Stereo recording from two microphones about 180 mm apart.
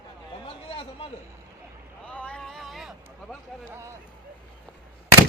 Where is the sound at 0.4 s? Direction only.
30° left (ahead or behind).